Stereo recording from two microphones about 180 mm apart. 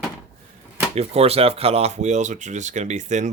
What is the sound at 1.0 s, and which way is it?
Speech, 35° right (ahead or behind).